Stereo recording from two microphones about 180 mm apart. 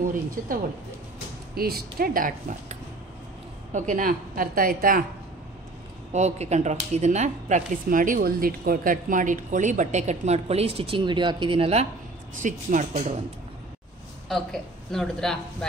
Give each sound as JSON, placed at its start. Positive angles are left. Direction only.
{"t": 1.5, "sound": "a woman's voice", "side_deg": -60}
{"t": 6.1, "sound": "a woman's voice", "side_deg": -35}
{"t": 14.3, "sound": "a woman's voice", "side_deg": 0}